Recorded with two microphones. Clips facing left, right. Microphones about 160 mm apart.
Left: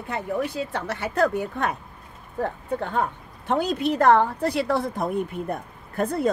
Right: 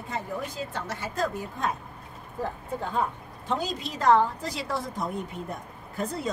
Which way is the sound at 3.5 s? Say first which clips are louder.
Left 8 dB; 60° left (ahead or behind).